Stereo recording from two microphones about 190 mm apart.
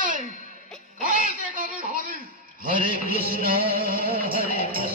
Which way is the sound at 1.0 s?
45° right (ahead or behind).